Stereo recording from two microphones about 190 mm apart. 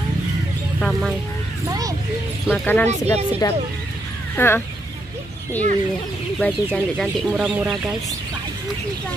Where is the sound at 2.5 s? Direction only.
10° left (ahead or behind).